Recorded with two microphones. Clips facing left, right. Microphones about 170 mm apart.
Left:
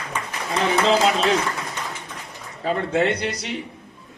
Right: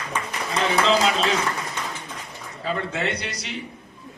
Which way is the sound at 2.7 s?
45° left (ahead or behind).